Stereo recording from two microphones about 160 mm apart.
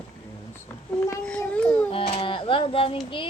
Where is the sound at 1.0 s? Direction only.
10° left (ahead or behind).